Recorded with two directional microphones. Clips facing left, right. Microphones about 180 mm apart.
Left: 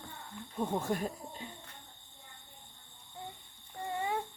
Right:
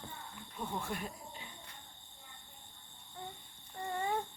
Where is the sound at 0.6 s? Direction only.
40° left (ahead or behind).